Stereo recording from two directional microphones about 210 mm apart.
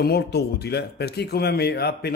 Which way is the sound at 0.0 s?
50° left (ahead or behind).